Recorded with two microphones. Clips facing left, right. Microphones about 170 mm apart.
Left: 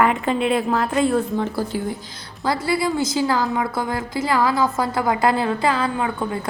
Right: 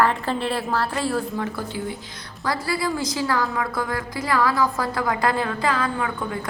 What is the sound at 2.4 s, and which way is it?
A woman's voice, 25° left (ahead or behind).